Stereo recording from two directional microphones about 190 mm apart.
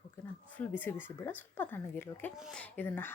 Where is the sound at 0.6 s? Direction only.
10° left (ahead or behind).